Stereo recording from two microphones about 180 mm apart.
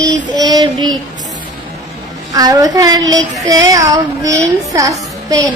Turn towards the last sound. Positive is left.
turn(degrees=-20)  # may be behind; listen again after turning